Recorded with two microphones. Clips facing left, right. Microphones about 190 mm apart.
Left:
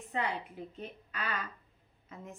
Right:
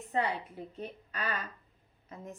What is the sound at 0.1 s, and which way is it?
Speech, 40° right (ahead or behind).